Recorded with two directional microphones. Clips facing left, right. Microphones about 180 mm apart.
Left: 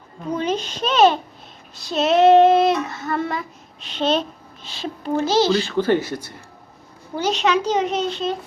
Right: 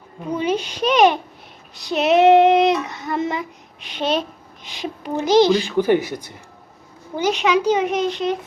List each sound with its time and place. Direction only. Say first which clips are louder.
0.3 s a child's voice: right 1 dB; 10° right (ahead or behind)
1.7 s child singing: right 2 dB; 15° right (ahead or behind)
7.2 s a child's voice: right 1 dB; 10° right (ahead or behind)